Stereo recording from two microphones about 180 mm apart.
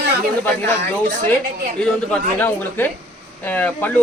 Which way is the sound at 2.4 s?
10° left (ahead or behind).